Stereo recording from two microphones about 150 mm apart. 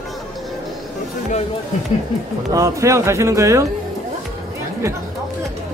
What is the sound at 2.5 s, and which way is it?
Speech, 20° right (ahead or behind).